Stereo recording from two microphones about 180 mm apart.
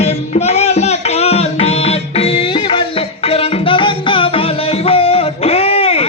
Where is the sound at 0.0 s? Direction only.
35° left (ahead or behind).